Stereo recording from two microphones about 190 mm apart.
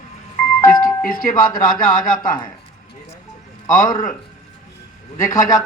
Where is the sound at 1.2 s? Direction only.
50° left (ahead or behind).